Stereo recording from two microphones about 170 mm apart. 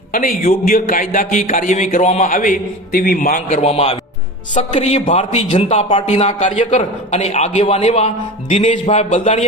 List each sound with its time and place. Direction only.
0.1 s a man's voice: 55° left (ahead or behind)